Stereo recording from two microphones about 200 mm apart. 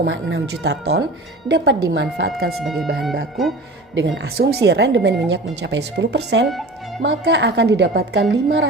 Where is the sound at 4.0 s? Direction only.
60° right (ahead or behind).